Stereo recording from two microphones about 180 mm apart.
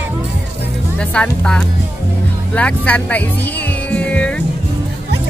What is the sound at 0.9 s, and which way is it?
Speech, 5° left (ahead or behind).